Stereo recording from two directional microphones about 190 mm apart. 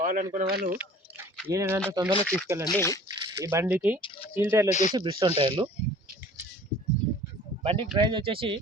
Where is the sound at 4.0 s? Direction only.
25° left (ahead or behind).